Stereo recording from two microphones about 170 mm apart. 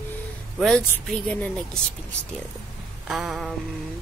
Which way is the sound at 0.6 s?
5° left (ahead or behind).